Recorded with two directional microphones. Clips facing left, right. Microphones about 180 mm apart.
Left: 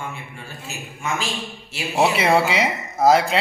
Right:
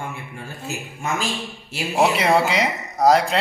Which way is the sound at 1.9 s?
Centre (ahead or behind).